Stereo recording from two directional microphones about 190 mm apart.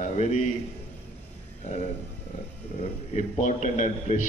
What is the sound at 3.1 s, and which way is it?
A man's voice, 40° left (ahead or behind).